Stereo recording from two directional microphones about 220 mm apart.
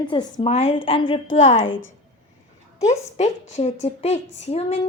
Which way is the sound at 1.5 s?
60° left (ahead or behind).